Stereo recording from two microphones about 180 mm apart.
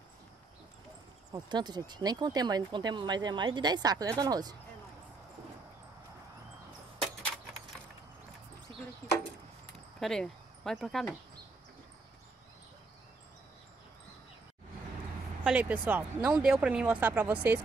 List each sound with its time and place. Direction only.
1.3 s speech: 25° right (ahead or behind)
9.9 s speech: centre (ahead or behind)
15.4 s speech: 10° right (ahead or behind)